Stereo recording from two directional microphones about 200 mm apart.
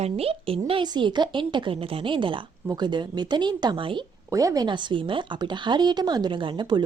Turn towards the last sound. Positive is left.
turn(degrees=-20)  # may be behind; listen again after turning